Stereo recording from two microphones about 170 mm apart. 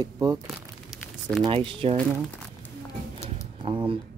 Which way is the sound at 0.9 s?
Centre (ahead or behind).